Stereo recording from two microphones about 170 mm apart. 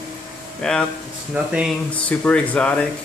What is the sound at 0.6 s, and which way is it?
Speech, 5° left (ahead or behind).